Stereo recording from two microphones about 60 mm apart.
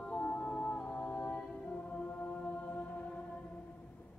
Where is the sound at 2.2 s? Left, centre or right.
Left.